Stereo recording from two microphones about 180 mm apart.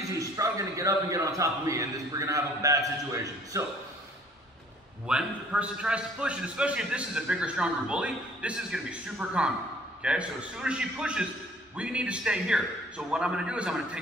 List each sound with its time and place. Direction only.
0.2 s a man's voice: 20° right (ahead or behind)
5.0 s a man's voice: 5° right (ahead or behind)